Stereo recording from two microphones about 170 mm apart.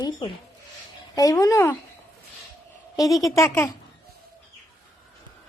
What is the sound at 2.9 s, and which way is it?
Speech, 20° left (ahead or behind).